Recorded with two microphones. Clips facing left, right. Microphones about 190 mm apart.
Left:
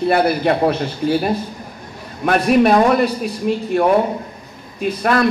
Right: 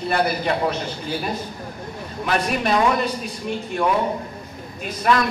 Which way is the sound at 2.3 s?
55° left (ahead or behind).